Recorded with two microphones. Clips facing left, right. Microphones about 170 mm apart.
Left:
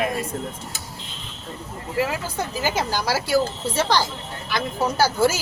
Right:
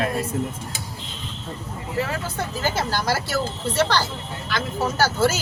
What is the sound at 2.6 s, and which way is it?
A woman's voice, 15° left (ahead or behind).